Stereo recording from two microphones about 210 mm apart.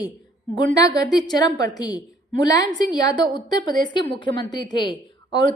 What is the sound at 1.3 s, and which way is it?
A woman's voice, 20° left (ahead or behind).